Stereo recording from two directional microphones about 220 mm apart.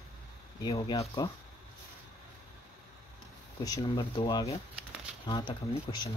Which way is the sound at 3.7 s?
20° left (ahead or behind).